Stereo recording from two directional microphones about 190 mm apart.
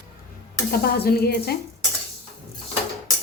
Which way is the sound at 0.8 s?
55° left (ahead or behind).